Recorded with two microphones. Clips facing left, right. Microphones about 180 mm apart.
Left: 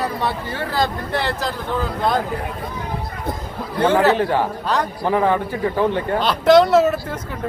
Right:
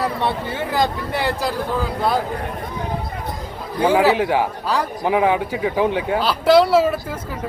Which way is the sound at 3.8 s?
10° right (ahead or behind).